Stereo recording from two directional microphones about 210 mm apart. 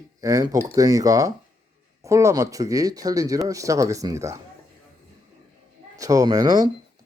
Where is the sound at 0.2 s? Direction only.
15° right (ahead or behind).